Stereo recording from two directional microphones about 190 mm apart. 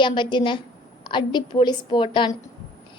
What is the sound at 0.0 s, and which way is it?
A woman's voice, 25° left (ahead or behind).